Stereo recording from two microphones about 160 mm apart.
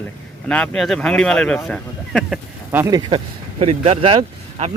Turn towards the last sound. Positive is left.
turn(degrees=-35)  # may be behind; listen again after turning